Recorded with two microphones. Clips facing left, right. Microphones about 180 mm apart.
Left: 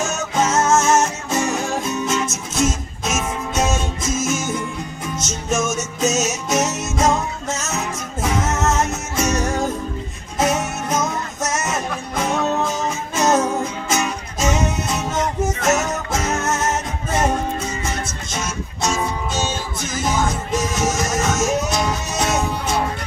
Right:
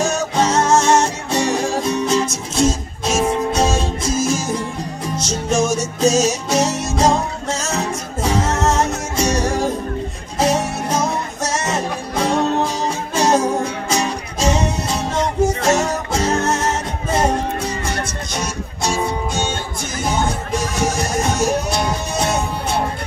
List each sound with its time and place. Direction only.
0.0 s music: 35° right (ahead or behind)
18.4 s music: 35° right (ahead or behind)
20.1 s music: 30° right (ahead or behind)